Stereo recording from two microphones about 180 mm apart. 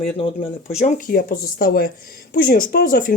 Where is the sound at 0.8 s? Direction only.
45° left (ahead or behind).